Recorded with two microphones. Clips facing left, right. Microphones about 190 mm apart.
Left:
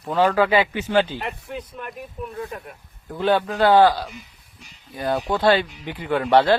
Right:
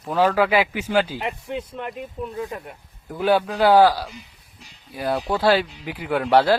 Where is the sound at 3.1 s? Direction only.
10° right (ahead or behind).